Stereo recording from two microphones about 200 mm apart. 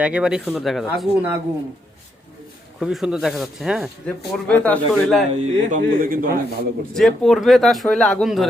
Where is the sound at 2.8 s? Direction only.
5° right (ahead or behind).